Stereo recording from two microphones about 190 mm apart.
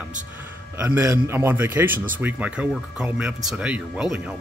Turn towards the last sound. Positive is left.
turn(degrees=-5)  # may be behind; listen again after turning